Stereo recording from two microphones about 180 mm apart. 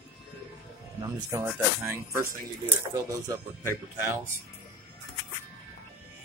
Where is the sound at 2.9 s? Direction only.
20° right (ahead or behind).